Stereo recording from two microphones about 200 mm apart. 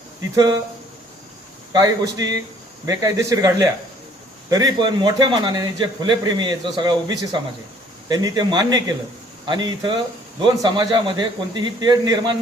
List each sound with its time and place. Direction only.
0.3 s a man's voice: 20° right (ahead or behind)
1.7 s a man's voice: 20° right (ahead or behind)